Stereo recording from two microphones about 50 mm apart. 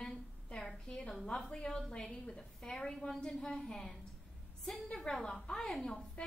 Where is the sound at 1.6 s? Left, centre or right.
Centre.